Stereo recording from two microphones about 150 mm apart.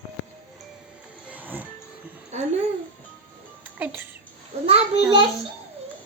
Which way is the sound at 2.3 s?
45° right (ahead or behind).